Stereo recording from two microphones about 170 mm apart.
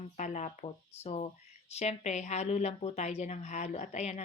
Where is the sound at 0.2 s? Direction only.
45° left (ahead or behind).